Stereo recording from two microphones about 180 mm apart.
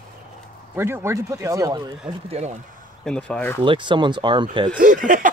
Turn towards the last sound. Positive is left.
turn(degrees=-45)  # may be behind; listen again after turning